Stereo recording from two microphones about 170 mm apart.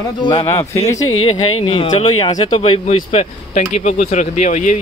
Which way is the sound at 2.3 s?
45° left (ahead or behind).